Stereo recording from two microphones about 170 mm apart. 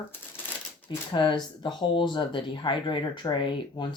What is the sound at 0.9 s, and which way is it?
Speech, 30° left (ahead or behind).